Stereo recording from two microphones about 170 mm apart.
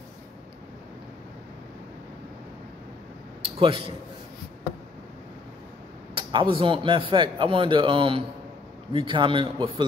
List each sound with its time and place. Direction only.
3.4 s a man's voice: 35° right (ahead or behind)
6.1 s a man's voice: 30° right (ahead or behind)